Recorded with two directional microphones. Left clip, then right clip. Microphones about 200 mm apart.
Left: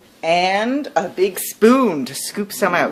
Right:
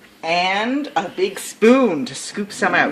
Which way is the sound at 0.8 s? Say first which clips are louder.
Left 2 dB; 45° left (ahead or behind).